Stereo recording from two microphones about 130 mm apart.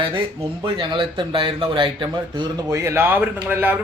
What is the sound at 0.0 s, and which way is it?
Speech, 40° right (ahead or behind).